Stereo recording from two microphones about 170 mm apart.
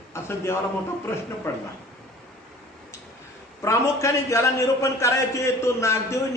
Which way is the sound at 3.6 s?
15° left (ahead or behind).